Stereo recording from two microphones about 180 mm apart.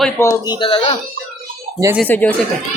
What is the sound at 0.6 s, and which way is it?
Speech, 30° left (ahead or behind).